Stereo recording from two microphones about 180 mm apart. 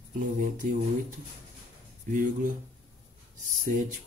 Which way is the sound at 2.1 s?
45° right (ahead or behind).